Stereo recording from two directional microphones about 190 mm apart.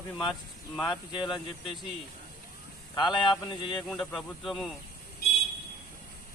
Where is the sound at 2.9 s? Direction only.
25° left (ahead or behind).